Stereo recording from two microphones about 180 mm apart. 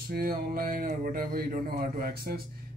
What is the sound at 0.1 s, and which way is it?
Speech, 55° right (ahead or behind).